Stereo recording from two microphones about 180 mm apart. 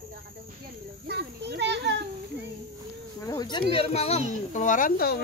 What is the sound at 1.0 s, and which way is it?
Speech, 70° right (ahead or behind).